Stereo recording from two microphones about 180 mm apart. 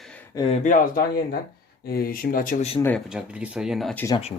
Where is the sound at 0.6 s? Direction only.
50° left (ahead or behind).